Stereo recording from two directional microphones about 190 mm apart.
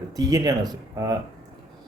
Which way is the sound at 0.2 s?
20° right (ahead or behind).